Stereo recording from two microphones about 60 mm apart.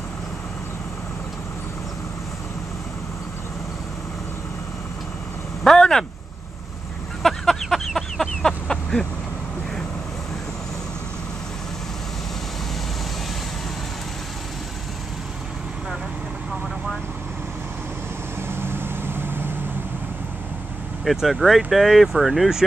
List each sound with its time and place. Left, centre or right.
5.6 s speech: centre
7.2 s a sound: centre
18.5 s vehicle: right
21.0 s speech: centre